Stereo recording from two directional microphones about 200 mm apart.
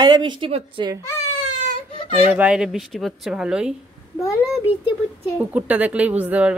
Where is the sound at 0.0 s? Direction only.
20° right (ahead or behind).